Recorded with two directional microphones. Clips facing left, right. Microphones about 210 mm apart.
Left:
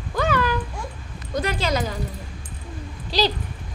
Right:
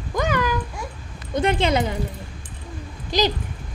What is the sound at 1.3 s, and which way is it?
Speech, 25° right (ahead or behind).